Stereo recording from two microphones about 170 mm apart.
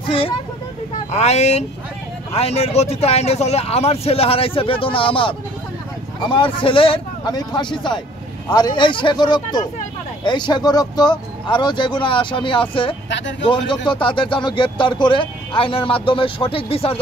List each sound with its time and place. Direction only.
1.1 s speech: 40° left (ahead or behind)